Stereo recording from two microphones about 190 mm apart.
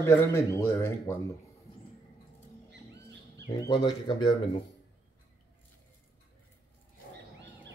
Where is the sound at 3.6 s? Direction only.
20° left (ahead or behind).